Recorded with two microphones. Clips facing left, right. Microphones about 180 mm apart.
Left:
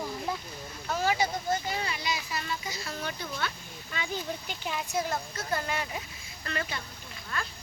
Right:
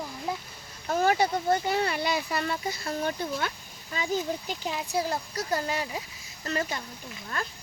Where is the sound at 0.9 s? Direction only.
50° right (ahead or behind).